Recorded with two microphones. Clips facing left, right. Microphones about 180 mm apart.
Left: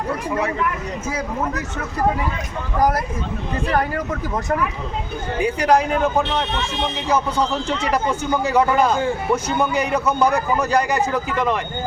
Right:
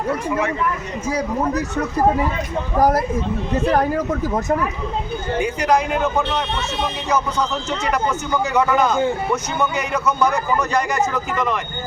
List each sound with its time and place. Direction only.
1.1 s speech: 35° right (ahead or behind)
5.4 s speech: 35° left (ahead or behind)